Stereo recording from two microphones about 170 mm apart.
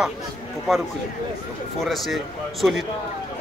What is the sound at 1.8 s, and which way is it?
Speech, centre (ahead or behind).